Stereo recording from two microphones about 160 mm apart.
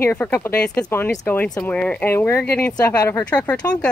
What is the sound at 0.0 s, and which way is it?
Speech, 10° left (ahead or behind).